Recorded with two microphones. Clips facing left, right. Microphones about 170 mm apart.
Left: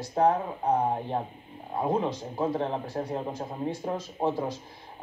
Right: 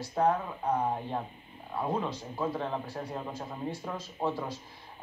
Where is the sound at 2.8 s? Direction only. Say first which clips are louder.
Left 6 dB; 45° left (ahead or behind).